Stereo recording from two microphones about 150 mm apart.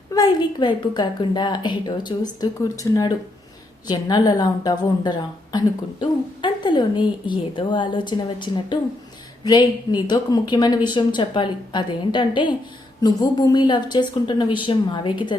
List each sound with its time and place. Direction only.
0.1 s a woman's voice: 25° left (ahead or behind)